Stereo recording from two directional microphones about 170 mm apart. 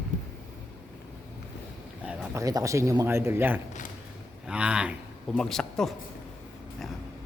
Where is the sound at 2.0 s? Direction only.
5° right (ahead or behind).